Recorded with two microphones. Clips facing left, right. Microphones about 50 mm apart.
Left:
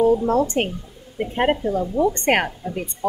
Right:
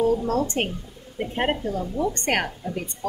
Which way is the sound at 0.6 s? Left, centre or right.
Centre.